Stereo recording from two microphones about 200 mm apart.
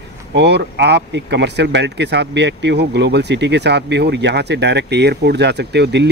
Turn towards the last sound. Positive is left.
turn(degrees=-60)  # may be behind; listen again after turning